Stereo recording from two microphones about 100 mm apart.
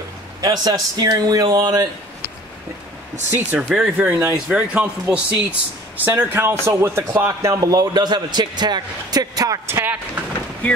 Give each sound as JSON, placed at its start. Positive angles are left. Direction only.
{"t": 0.4, "sound": "speech", "side_deg": -40}
{"t": 3.3, "sound": "speech", "side_deg": -20}
{"t": 3.7, "sound": "speech", "side_deg": -10}
{"t": 9.7, "sound": "speech", "side_deg": -25}